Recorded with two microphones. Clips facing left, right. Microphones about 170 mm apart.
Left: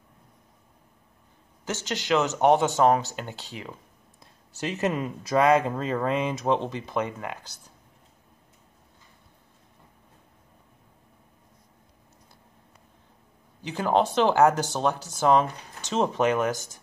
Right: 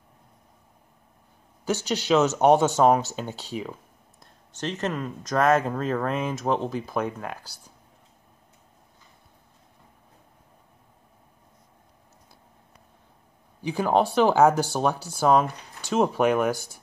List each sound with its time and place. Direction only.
2.3 s speech: 15° right (ahead or behind)
3.0 s speech: 15° left (ahead or behind)
3.3 s speech: 15° right (ahead or behind)
4.2 s speech: 5° left (ahead or behind)
13.6 s speech: 10° right (ahead or behind)